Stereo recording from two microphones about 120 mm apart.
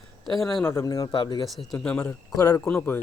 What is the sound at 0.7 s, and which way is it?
Speech, 25° left (ahead or behind).